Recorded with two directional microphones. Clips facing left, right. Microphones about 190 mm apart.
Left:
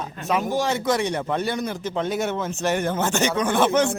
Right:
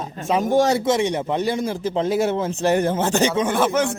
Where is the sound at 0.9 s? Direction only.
25° right (ahead or behind).